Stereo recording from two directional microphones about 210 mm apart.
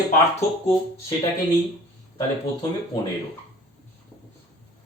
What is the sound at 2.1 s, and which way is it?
Speech, 20° left (ahead or behind).